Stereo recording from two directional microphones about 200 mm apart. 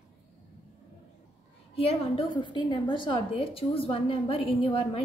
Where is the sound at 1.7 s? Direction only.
30° left (ahead or behind).